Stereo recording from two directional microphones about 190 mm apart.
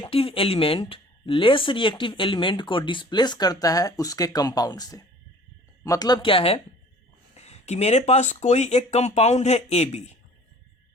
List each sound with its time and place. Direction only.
0.0 s speech: 30° left (ahead or behind)